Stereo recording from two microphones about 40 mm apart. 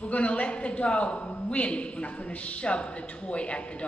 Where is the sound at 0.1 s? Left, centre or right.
Left.